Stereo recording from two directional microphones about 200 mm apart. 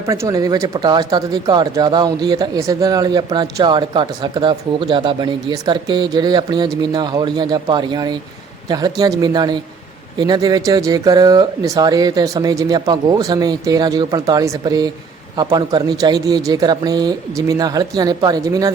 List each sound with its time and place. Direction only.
0.0 s speech: 15° right (ahead or behind)